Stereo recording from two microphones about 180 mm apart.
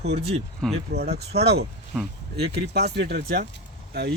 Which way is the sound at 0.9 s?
65° right (ahead or behind).